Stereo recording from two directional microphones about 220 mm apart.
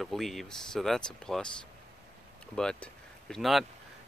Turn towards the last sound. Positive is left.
turn(degrees=0)  # may be behind; listen again after turning